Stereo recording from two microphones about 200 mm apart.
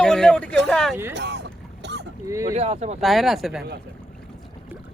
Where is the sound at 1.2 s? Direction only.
60° right (ahead or behind).